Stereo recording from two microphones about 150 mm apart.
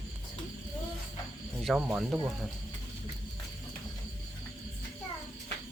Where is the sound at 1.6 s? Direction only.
Centre (ahead or behind).